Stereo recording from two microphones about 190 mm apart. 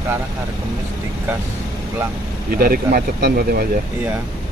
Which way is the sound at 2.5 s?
50° right (ahead or behind).